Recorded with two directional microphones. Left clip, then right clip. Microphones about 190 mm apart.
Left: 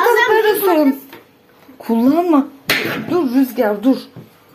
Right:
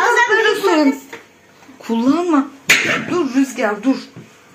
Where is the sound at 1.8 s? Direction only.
60° left (ahead or behind).